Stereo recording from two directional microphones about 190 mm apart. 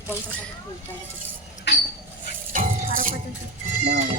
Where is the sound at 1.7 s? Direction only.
65° left (ahead or behind).